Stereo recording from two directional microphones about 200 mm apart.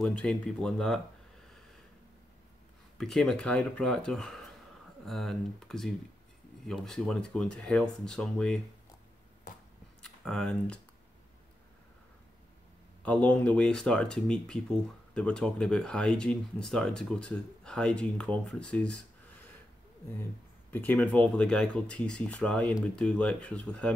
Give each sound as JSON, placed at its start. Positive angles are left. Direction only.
{"t": 0.0, "sound": "speech", "side_deg": 5}
{"t": 3.0, "sound": "speech", "side_deg": 0}
{"t": 10.0, "sound": "speech", "side_deg": 5}
{"t": 13.0, "sound": "speech", "side_deg": 5}
{"t": 20.7, "sound": "speech", "side_deg": 10}